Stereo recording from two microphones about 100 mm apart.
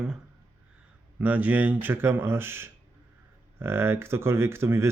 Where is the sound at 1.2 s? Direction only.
15° right (ahead or behind).